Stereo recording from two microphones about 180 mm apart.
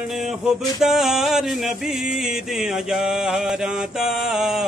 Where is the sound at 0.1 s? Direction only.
Centre (ahead or behind).